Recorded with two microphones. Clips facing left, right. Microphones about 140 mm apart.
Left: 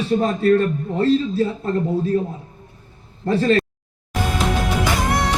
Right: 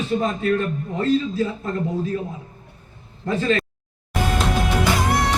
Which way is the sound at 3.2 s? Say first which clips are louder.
Left 4 dB; 35° left (ahead or behind).